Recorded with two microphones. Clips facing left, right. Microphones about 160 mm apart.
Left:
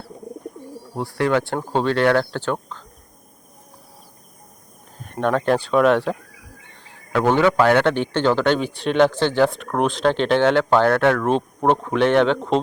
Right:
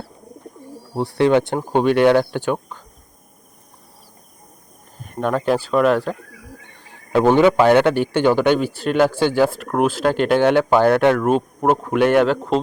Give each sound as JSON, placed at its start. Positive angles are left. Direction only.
{"t": 0.9, "sound": "a man's voice", "side_deg": -20}
{"t": 5.0, "sound": "speech", "side_deg": -5}
{"t": 7.1, "sound": "a man's voice", "side_deg": -15}